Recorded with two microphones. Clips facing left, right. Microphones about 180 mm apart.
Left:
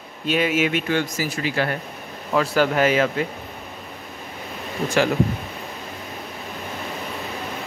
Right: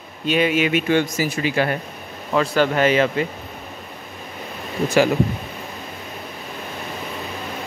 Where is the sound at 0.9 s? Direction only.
20° right (ahead or behind).